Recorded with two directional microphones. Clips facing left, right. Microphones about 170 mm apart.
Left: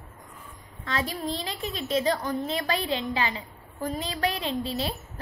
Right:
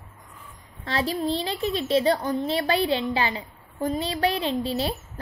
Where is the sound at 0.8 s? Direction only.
30° right (ahead or behind).